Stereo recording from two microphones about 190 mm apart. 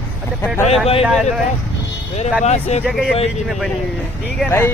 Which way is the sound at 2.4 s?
35° left (ahead or behind).